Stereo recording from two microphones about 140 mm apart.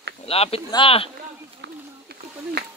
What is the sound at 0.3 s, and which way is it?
Speech, 45° left (ahead or behind).